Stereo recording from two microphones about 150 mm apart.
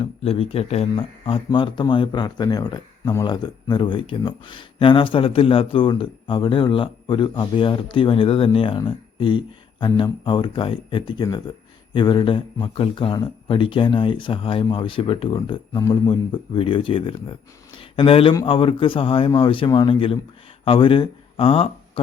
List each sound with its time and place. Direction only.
0.0 s speech: 40° left (ahead or behind)